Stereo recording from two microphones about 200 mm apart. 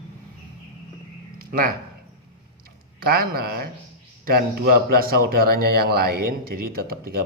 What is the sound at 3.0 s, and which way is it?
Speech, 50° right (ahead or behind).